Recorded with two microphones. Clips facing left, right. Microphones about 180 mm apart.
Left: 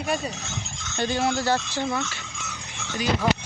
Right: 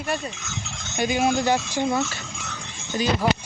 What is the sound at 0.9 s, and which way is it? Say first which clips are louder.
Speech: right 3 dB; 15° right (ahead or behind).